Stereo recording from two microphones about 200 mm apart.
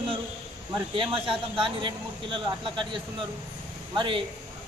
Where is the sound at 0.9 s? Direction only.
25° right (ahead or behind).